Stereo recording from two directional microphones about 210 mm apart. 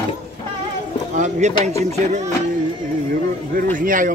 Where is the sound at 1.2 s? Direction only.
35° right (ahead or behind).